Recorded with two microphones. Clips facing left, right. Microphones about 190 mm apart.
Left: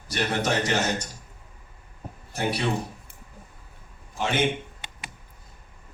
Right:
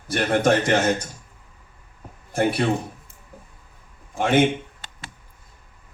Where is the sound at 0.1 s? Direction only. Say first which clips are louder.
Right 7 dB; 50° right (ahead or behind).